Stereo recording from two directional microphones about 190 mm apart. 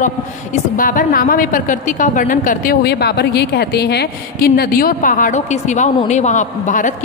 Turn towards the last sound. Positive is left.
turn(degrees=40)  # may be behind; listen again after turning